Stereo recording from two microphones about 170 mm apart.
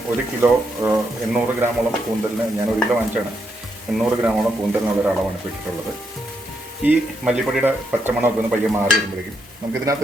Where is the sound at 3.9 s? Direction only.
5° right (ahead or behind).